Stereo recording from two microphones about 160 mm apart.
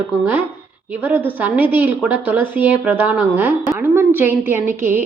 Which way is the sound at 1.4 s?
10° right (ahead or behind).